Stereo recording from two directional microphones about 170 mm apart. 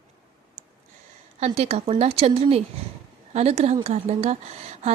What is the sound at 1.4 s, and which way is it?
Speech, 40° right (ahead or behind).